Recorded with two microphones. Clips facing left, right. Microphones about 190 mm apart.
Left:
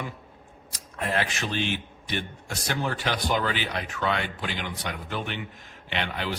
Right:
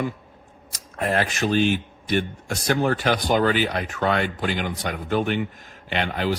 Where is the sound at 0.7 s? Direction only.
45° right (ahead or behind).